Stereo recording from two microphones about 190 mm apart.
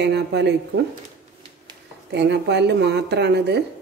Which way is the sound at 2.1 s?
65° right (ahead or behind).